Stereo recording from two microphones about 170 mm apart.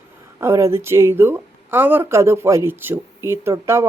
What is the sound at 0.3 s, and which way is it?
A woman's voice, 15° right (ahead or behind).